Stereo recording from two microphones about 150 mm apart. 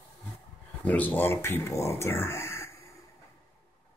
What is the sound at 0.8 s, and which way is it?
Speech, 10° left (ahead or behind).